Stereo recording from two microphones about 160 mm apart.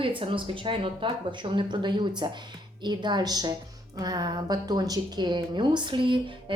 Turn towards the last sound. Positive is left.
turn(degrees=-30)  # may be behind; listen again after turning